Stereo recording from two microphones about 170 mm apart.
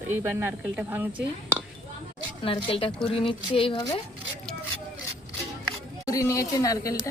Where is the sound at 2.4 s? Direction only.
30° left (ahead or behind).